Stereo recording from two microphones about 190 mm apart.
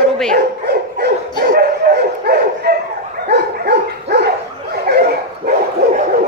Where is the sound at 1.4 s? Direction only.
55° right (ahead or behind).